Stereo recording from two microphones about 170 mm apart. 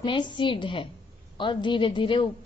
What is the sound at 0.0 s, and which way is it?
A woman's voice, 30° left (ahead or behind).